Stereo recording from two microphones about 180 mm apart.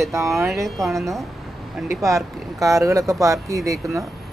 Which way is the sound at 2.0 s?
15° right (ahead or behind).